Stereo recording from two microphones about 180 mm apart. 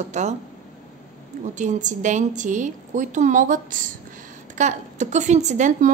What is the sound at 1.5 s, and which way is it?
A woman's voice, 40° right (ahead or behind).